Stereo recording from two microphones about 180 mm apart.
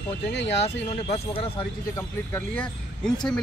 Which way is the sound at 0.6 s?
35° left (ahead or behind).